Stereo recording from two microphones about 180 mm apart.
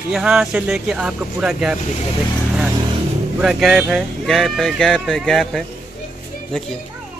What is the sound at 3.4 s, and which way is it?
Speech, 5° right (ahead or behind).